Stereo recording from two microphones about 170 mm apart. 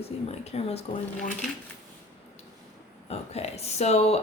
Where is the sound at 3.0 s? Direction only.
40° left (ahead or behind).